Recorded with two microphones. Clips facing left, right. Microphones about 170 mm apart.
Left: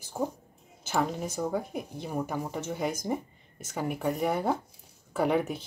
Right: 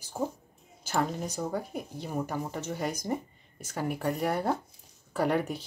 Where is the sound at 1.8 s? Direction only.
15° left (ahead or behind).